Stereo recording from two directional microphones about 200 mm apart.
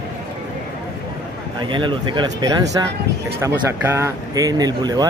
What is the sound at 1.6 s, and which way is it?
Speech, 25° right (ahead or behind).